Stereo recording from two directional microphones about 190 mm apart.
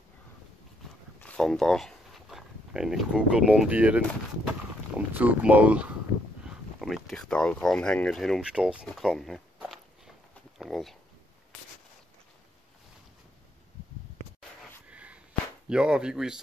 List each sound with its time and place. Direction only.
1.2 s speech: 5° left (ahead or behind)
14.9 s a sound: 5° right (ahead or behind)
15.7 s speech: 5° right (ahead or behind)